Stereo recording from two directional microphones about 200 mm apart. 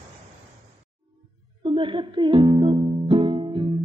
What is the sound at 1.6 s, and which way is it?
Music, 25° right (ahead or behind).